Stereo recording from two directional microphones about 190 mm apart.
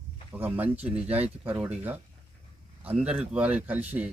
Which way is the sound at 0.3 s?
10° right (ahead or behind).